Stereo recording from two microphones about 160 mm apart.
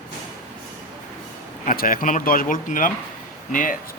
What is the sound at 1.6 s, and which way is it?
Speech, 60° left (ahead or behind).